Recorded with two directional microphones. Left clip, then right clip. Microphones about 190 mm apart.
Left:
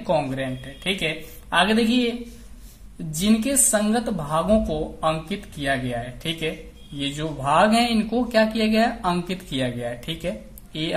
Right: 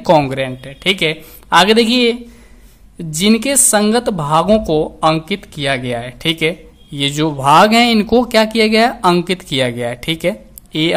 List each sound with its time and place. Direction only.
0.0 s speech: 40° right (ahead or behind)
3.2 s speech: 45° right (ahead or behind)